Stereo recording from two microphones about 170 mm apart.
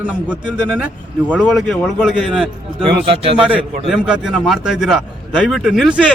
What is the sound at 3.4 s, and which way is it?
Speech, 5° right (ahead or behind).